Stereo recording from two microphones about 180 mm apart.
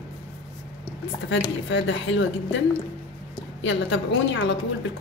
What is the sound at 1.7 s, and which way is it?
Speech, 90° left.